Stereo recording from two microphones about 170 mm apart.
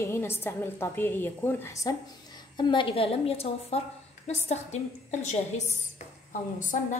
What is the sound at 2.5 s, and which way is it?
A woman's voice, 30° left (ahead or behind).